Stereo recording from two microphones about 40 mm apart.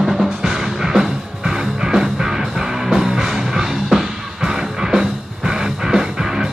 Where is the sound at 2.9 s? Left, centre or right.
Centre.